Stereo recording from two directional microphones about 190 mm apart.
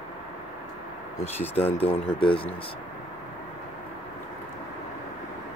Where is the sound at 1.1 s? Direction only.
10° left (ahead or behind).